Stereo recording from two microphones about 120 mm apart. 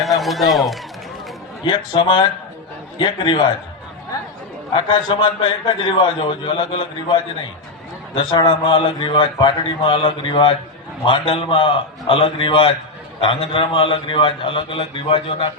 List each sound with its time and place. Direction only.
0.2 s a man's voice: centre (ahead or behind)
1.6 s a man's voice: 40° left (ahead or behind)
4.7 s a man's voice: 45° left (ahead or behind)